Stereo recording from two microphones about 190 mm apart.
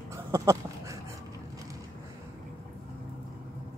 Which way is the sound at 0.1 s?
15° right (ahead or behind).